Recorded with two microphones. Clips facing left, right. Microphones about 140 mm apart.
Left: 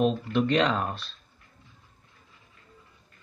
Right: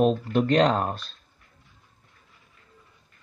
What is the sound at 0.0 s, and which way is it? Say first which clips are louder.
Speech: right 3 dB; 45° right (ahead or behind).